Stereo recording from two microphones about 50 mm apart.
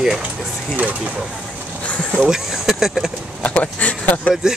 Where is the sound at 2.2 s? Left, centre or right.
Centre.